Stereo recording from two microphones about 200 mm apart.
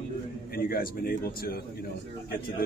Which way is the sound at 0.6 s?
50° left (ahead or behind).